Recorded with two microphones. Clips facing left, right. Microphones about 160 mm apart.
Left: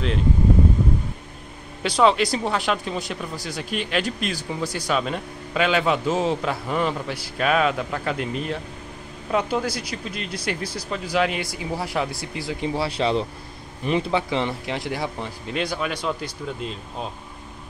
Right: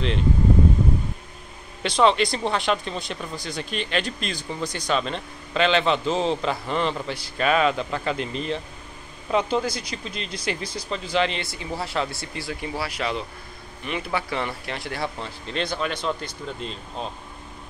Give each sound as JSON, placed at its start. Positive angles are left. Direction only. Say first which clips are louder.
{"t": 1.8, "sound": "speech", "louder": "left 1 dB", "side_deg": 5}
{"t": 12.8, "sound": "speech", "louder": "left 6 dB", "side_deg": 30}
{"t": 14.1, "sound": "speech", "louder": "left 4 dB", "side_deg": 20}